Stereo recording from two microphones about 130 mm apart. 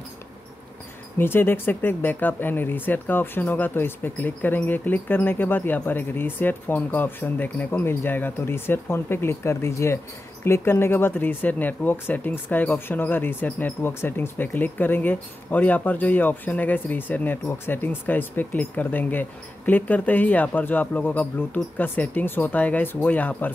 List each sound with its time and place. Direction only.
1.1 s speech: 15° left (ahead or behind)